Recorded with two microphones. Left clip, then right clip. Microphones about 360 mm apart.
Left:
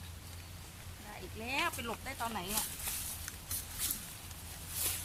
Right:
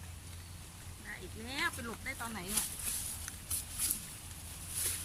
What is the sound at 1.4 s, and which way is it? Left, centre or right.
Speech, centre.